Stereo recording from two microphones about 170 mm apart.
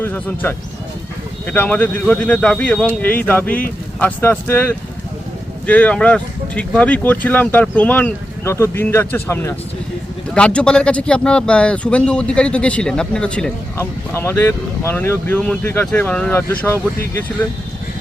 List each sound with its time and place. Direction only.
0.0 s speech: 10° left (ahead or behind)